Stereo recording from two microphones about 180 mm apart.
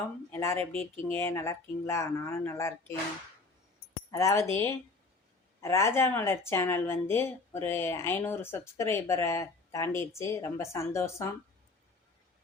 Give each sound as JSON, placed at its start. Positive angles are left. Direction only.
{"t": 0.3, "sound": "speech", "side_deg": 15}
{"t": 4.1, "sound": "speech", "side_deg": 20}